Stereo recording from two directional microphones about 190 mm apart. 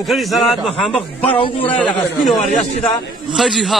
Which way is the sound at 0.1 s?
Centre (ahead or behind).